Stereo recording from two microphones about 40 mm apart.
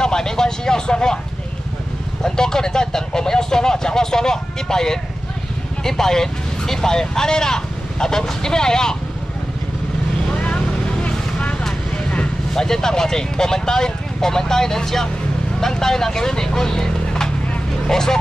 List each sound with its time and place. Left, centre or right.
0.0 s vehicle: centre
2.2 s vehicle: centre
5.9 s speech: centre
10.3 s vehicle: left
12.5 s speech: centre